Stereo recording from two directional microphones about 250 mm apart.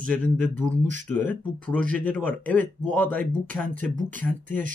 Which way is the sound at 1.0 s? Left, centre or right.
Centre.